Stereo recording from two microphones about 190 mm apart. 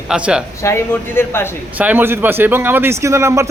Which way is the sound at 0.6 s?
10° left (ahead or behind).